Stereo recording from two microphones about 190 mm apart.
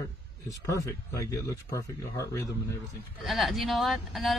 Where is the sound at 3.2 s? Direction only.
Centre (ahead or behind).